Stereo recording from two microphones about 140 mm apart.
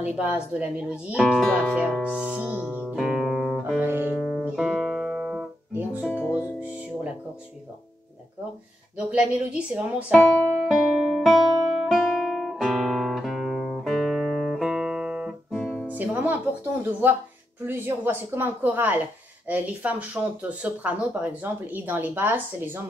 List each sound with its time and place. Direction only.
0.0 s speech: 10° right (ahead or behind)
3.0 s music: centre (ahead or behind)
3.8 s music: 15° right (ahead or behind)
4.2 s music: 5° right (ahead or behind)
6.2 s music: 15° left (ahead or behind)
8.9 s speech: 5° right (ahead or behind)
10.7 s music: centre (ahead or behind)
11.8 s guitar: centre (ahead or behind)
15.9 s music: 10° right (ahead or behind)
17.6 s speech: 15° right (ahead or behind)